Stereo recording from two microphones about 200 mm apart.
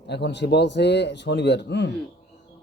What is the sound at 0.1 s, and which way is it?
A man's voice, 60° left (ahead or behind).